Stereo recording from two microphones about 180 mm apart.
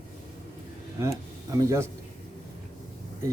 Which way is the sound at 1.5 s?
15° right (ahead or behind).